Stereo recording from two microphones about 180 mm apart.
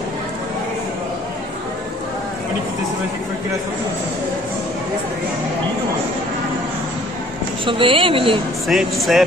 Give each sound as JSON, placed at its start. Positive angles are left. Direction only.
{"t": 7.6, "sound": "speech", "side_deg": -30}
{"t": 8.6, "sound": "speech", "side_deg": 0}